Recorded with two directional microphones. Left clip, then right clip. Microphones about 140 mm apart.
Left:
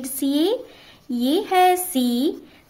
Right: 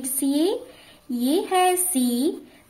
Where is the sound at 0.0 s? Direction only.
35° left (ahead or behind).